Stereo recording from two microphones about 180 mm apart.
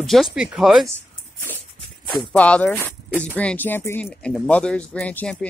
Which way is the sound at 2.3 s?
5° left (ahead or behind).